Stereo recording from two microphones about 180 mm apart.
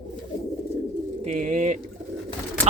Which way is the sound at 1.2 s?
45° right (ahead or behind).